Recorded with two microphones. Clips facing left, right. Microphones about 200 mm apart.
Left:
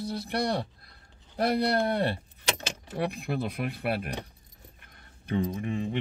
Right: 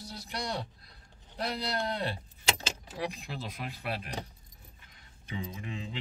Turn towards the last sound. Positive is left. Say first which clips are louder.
# left 9 dB
turn(degrees=55)  # may be behind; listen again after turning